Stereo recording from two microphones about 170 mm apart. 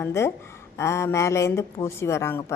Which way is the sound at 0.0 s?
15° left (ahead or behind).